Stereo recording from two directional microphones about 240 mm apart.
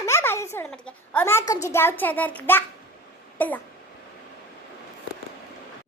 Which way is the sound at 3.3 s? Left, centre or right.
Centre.